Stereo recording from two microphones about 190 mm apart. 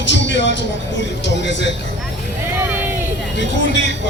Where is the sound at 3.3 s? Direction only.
65° left (ahead or behind).